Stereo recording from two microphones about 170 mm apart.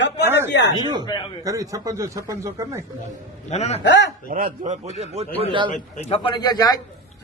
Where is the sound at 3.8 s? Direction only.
90° left.